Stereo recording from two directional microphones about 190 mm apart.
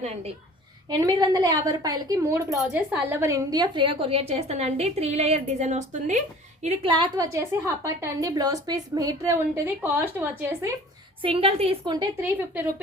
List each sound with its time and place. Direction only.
0.9 s a woman's voice: 20° right (ahead or behind)
7.3 s a woman's voice: 15° right (ahead or behind)
11.2 s a woman's voice: 30° right (ahead or behind)
12.2 s a woman's voice: 10° right (ahead or behind)